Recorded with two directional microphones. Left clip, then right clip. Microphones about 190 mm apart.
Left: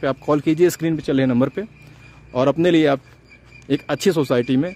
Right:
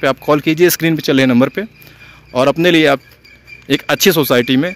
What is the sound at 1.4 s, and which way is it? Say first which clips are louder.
Speech: right 6 dB; 5° right (ahead or behind).